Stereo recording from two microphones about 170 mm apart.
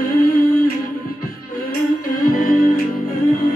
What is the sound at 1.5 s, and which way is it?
Music, 55° left (ahead or behind).